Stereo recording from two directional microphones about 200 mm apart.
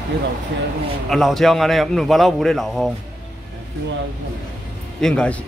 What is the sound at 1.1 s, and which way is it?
A man's voice, centre (ahead or behind).